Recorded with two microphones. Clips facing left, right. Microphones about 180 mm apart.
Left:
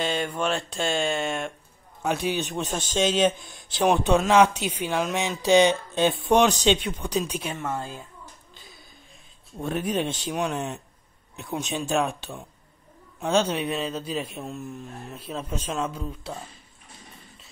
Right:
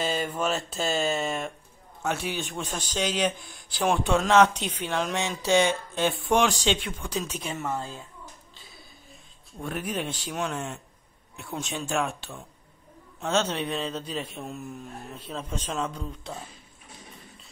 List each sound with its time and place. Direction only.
0.0 s mantra: centre (ahead or behind)
2.0 s a man's voice: 15° left (ahead or behind)
9.6 s a man's voice: 25° left (ahead or behind); by 16.3 s 5° left (ahead or behind)